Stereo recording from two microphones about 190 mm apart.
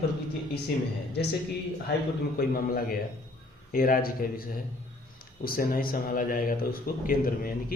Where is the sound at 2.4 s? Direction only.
50° left (ahead or behind).